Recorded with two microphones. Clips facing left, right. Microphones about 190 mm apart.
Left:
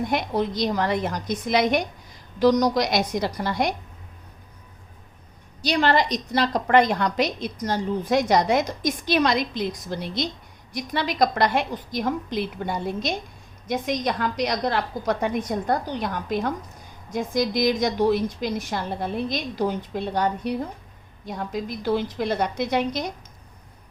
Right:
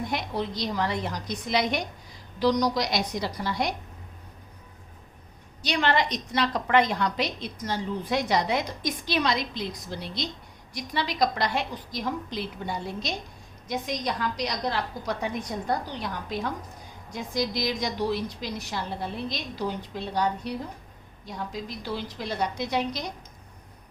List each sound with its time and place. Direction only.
0.1 s a woman's voice: 50° left (ahead or behind)
5.6 s a woman's voice: 35° left (ahead or behind)